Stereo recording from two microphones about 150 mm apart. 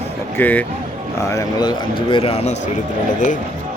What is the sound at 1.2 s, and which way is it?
Speech, 25° left (ahead or behind).